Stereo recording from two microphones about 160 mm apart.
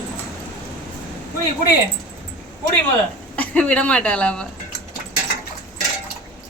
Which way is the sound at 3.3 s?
10° left (ahead or behind).